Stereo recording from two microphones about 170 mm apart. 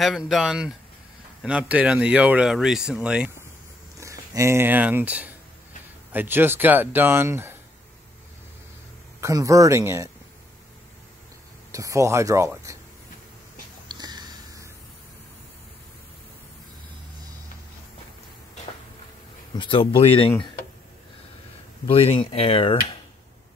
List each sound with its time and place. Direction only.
0.0 s speech: centre (ahead or behind)
4.0 s speech: 20° right (ahead or behind)
9.2 s speech: 20° right (ahead or behind)
11.7 s speech: 20° right (ahead or behind)
13.8 s sniff: 25° right (ahead or behind)
19.5 s speech: 30° left (ahead or behind)
21.8 s speech: 35° left (ahead or behind)